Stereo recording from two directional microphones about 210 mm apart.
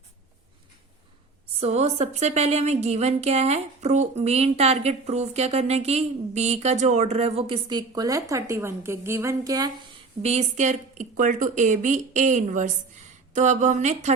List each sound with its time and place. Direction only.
1.5 s speech: 30° right (ahead or behind)
10.2 s speech: 35° right (ahead or behind)